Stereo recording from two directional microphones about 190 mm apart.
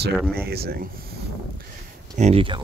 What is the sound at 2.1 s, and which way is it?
Speech, 35° right (ahead or behind).